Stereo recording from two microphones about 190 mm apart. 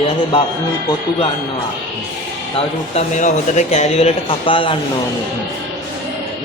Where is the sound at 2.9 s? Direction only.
40° left (ahead or behind).